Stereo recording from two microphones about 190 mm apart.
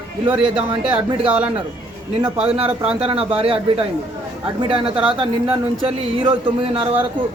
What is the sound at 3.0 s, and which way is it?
Speech, 30° right (ahead or behind).